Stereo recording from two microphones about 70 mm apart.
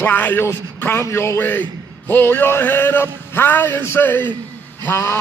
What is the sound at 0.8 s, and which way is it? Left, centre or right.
A man's voice, left.